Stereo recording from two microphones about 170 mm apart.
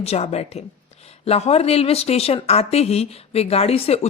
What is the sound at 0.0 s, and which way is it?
Speech, 40° left (ahead or behind).